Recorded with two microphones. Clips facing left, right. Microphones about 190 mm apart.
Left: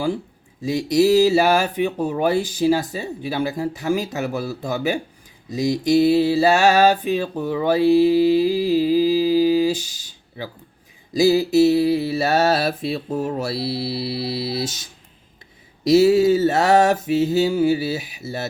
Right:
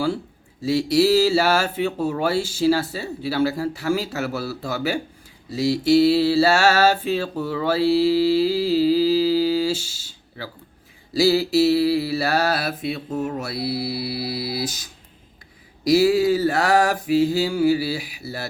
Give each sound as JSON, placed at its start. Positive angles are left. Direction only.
{"t": 0.6, "sound": "speech", "side_deg": 20}
{"t": 5.5, "sound": "mantra", "side_deg": 20}